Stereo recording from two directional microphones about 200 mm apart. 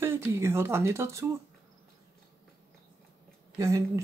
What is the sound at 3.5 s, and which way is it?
Speech, 15° right (ahead or behind).